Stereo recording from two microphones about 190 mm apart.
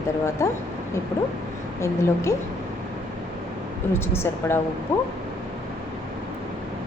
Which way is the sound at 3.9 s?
15° left (ahead or behind).